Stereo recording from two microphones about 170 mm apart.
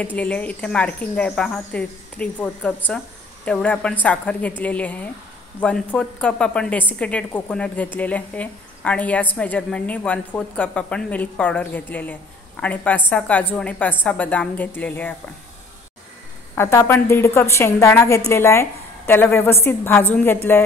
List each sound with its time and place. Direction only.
0.0 s a woman's voice: 10° left (ahead or behind)
16.5 s a woman's voice: 15° left (ahead or behind)